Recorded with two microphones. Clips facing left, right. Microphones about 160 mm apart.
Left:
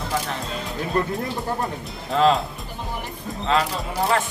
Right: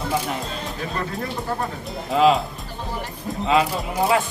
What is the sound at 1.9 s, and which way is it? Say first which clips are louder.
A man's voice: right 2 dB; 5° right (ahead or behind).